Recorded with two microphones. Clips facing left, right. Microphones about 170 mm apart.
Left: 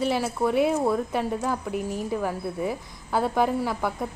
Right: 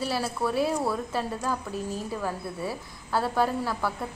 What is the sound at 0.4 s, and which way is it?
A woman's voice, 20° left (ahead or behind).